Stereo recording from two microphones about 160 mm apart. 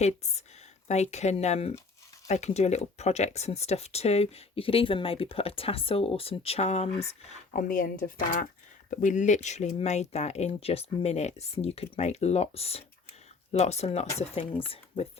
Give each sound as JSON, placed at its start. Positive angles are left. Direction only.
{"t": 0.0, "sound": "speech", "side_deg": 45}
{"t": 7.5, "sound": "speech", "side_deg": 60}